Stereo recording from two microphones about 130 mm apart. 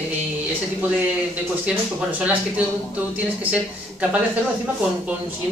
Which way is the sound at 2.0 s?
10° right (ahead or behind).